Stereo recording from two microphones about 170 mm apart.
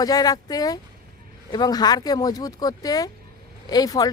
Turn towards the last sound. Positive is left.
turn(degrees=20)  # may be behind; listen again after turning